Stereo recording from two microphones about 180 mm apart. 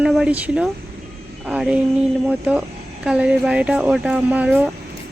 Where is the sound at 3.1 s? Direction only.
5° right (ahead or behind).